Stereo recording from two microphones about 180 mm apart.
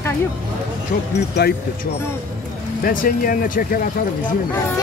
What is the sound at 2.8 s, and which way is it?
Speech, 50° left (ahead or behind).